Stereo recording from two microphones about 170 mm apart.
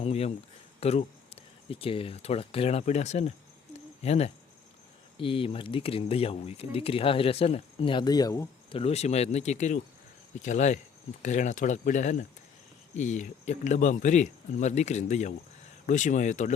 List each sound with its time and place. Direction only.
0.0 s speech: 35° left (ahead or behind); by 8.4 s 20° left (ahead or behind)
8.7 s speech: 35° left (ahead or behind)